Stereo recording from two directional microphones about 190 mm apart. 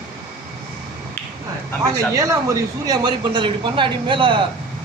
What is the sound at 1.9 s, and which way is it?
A man's voice, 15° right (ahead or behind).